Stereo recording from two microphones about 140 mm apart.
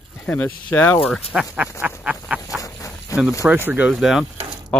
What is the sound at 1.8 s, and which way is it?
Duck, 10° right (ahead or behind).